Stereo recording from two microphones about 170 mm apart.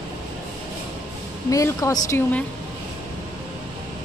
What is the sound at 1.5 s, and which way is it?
Speech, 20° left (ahead or behind).